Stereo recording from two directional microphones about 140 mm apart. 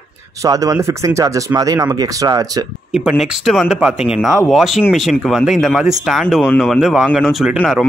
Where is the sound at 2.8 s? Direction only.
5° right (ahead or behind).